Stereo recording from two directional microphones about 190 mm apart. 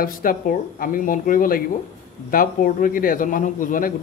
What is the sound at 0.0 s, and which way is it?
A man's voice, 50° left (ahead or behind).